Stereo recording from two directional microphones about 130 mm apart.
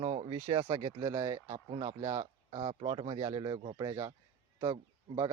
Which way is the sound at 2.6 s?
40° right (ahead or behind).